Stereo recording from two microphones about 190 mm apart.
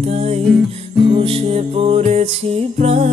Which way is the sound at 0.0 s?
35° right (ahead or behind).